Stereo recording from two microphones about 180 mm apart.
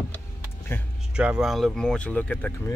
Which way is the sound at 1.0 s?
5° right (ahead or behind).